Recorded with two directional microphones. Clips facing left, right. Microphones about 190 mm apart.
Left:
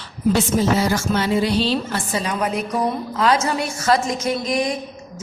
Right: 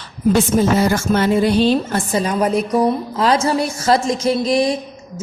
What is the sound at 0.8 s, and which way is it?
A woman's voice, 50° right (ahead or behind).